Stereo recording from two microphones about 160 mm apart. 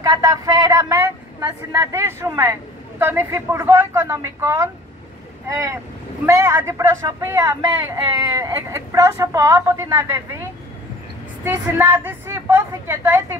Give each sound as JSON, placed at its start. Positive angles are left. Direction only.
{"t": 0.0, "sound": "speech", "side_deg": -25}
{"t": 11.4, "sound": "speech", "side_deg": -15}